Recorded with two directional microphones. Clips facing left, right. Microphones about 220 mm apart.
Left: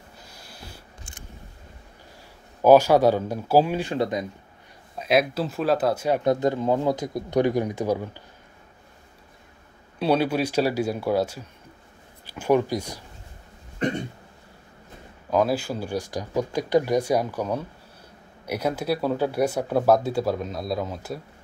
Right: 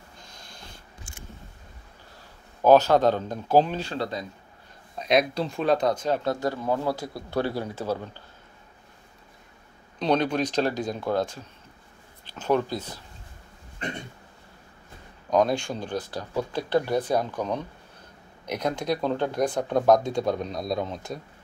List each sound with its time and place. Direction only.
0.2 s a sound: 5° left (ahead or behind)
2.6 s speech: 10° left (ahead or behind)
4.9 s speech: 5° left (ahead or behind)
9.9 s speech: 5° left (ahead or behind)
15.2 s speech: 5° left (ahead or behind)